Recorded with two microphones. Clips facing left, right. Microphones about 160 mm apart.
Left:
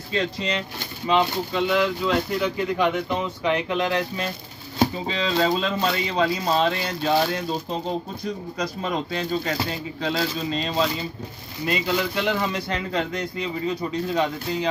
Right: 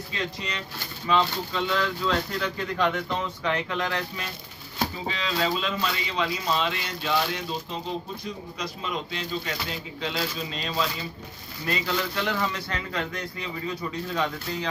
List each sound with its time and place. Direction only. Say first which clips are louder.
0.1 s a man's voice: left 9 dB; 30° left (ahead or behind)
1.0 s speech: left 3 dB; 15° left (ahead or behind); by 7.4 s 40° left (ahead or behind)
8.5 s speech: left 5 dB; 45° left (ahead or behind); by 10.9 s 25° left (ahead or behind)
11.6 s a man's voice: left 4 dB; 15° left (ahead or behind)